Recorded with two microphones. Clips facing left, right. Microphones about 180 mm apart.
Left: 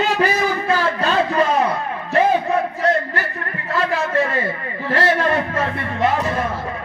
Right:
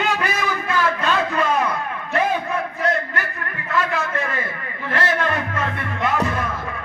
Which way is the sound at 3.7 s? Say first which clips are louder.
Left 3 dB; 30° left (ahead or behind).